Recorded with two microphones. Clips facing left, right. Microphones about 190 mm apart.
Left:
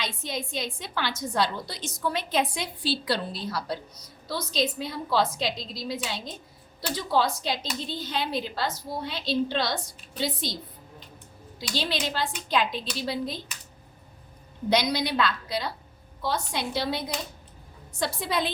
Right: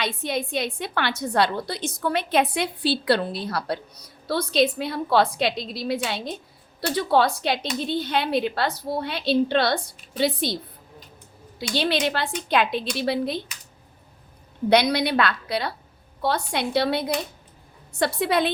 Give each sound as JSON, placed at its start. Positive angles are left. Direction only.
{"t": 0.0, "sound": "a woman's voice", "side_deg": -60}
{"t": 11.7, "sound": "a woman's voice", "side_deg": -65}
{"t": 14.7, "sound": "a woman's voice", "side_deg": -60}